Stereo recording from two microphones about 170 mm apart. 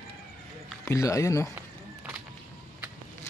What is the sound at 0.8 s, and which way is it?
Speech, 20° left (ahead or behind).